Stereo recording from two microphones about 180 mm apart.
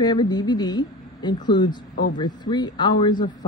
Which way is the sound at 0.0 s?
25° left (ahead or behind).